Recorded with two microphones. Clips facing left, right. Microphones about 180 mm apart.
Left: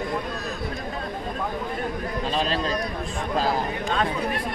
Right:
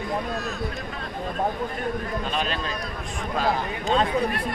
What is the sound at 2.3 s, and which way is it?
Speech, 35° left (ahead or behind).